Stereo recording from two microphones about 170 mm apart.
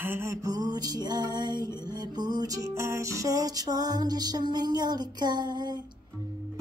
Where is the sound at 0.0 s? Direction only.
15° right (ahead or behind).